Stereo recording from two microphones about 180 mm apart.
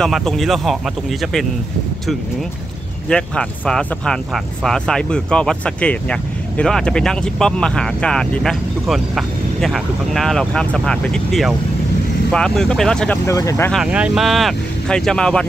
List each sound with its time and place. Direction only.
0.0 s speech: centre (ahead or behind)
3.1 s speech: 5° left (ahead or behind)
13.3 s speech: 15° left (ahead or behind)
13.7 s speech: 5° right (ahead or behind)